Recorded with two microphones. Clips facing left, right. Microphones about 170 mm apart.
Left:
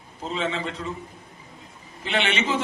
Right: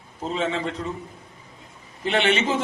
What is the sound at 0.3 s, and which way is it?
Speech, 45° right (ahead or behind).